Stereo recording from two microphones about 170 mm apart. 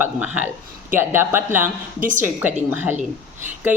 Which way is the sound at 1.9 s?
50° right (ahead or behind).